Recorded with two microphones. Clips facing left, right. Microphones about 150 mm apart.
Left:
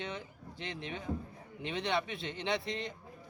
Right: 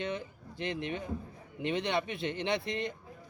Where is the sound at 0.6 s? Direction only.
55° right (ahead or behind).